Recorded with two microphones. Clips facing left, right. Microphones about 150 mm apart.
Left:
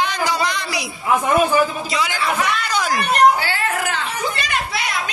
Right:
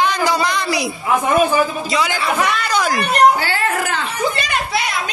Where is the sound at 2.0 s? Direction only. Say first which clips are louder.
Right 3 dB; 60° right (ahead or behind).